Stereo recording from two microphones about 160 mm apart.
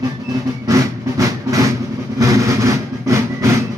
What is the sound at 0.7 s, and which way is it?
Train, 20° right (ahead or behind).